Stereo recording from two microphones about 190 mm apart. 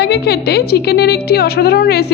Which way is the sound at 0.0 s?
60° left (ahead or behind).